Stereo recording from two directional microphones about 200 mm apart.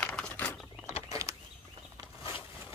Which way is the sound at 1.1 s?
15° right (ahead or behind).